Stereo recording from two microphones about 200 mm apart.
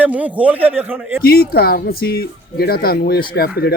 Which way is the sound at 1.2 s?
50° left (ahead or behind).